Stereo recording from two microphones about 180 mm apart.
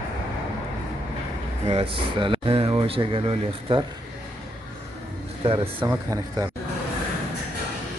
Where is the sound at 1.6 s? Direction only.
30° right (ahead or behind).